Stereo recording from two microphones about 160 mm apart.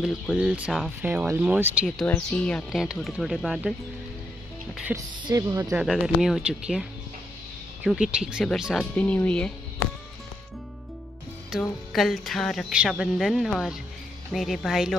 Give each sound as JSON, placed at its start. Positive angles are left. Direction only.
{"t": 0.0, "sound": "a woman's voice", "side_deg": 0}
{"t": 1.0, "sound": "speech", "side_deg": -10}
{"t": 2.0, "sound": "a woman's voice", "side_deg": 5}
{"t": 4.9, "sound": "speech", "side_deg": -20}
{"t": 5.7, "sound": "a woman's voice", "side_deg": 0}
{"t": 11.9, "sound": "a woman's voice", "side_deg": 0}